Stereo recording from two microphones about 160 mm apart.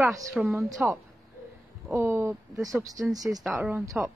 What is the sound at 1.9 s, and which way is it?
Speech, 15° right (ahead or behind).